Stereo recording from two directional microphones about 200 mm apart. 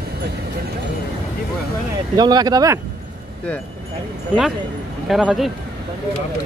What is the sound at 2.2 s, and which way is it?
Speech, 20° right (ahead or behind).